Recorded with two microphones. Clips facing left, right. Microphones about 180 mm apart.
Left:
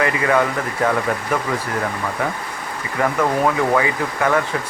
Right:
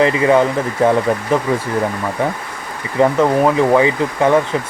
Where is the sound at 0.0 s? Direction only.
25° right (ahead or behind).